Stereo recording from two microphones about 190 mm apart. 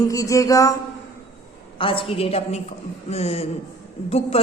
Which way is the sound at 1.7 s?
30° left (ahead or behind).